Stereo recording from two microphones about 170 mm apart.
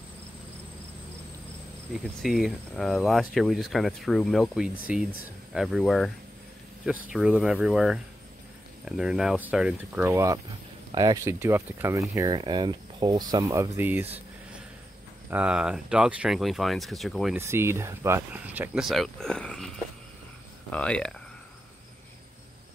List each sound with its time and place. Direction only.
2.2 s speech: centre (ahead or behind)
17.4 s speech: 15° right (ahead or behind); by 19.7 s 5° left (ahead or behind)
20.7 s speech: 5° left (ahead or behind)